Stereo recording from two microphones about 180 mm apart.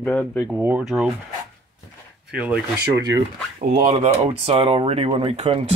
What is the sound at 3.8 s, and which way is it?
Speech, 40° right (ahead or behind).